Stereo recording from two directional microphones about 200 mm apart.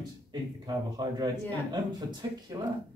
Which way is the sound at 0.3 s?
20° right (ahead or behind).